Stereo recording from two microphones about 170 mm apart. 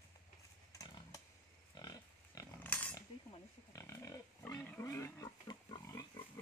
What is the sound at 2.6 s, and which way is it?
Cutlery, 10° left (ahead or behind).